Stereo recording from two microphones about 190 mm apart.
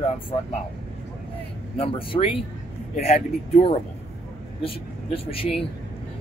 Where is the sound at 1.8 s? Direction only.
30° left (ahead or behind).